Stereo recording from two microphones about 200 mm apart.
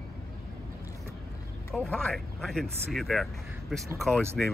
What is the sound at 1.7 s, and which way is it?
Speech, 5° left (ahead or behind).